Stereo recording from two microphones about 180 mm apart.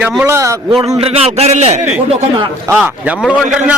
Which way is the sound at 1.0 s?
35° right (ahead or behind).